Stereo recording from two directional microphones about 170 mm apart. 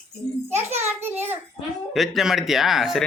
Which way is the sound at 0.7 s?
15° right (ahead or behind).